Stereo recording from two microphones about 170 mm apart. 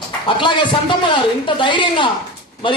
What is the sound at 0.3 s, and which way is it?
A man's voice, 30° left (ahead or behind).